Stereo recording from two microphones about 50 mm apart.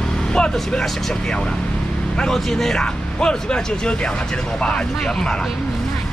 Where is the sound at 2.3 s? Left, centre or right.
Centre.